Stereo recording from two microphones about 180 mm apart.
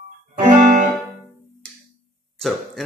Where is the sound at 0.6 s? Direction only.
45° right (ahead or behind).